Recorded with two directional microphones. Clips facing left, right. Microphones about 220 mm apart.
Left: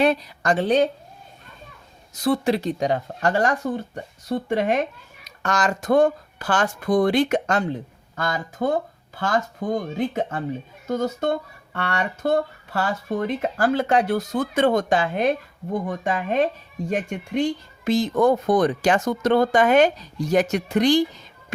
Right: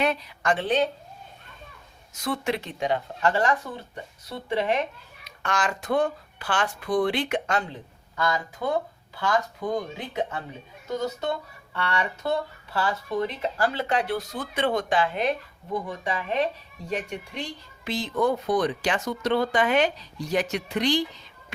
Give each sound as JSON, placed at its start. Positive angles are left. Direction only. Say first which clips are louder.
{"t": 0.0, "sound": "a woman's voice", "louder": "left 6 dB", "side_deg": 35}
{"t": 2.1, "sound": "speech", "louder": "left 7 dB", "side_deg": 35}